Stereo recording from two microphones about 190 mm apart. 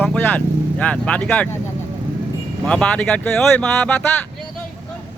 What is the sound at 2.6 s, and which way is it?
Speech, 5° left (ahead or behind).